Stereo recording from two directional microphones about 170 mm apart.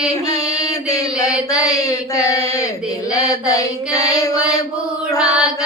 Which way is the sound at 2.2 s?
20° left (ahead or behind).